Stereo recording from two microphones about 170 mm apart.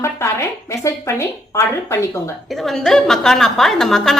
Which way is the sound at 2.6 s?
Centre (ahead or behind).